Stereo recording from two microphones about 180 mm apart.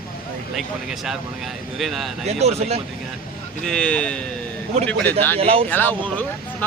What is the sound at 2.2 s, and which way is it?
Speech, 35° right (ahead or behind).